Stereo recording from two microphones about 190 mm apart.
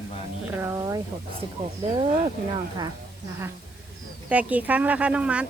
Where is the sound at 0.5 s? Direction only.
15° right (ahead or behind).